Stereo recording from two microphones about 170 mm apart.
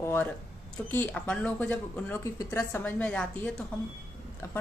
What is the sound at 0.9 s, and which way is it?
A woman's voice, 10° left (ahead or behind).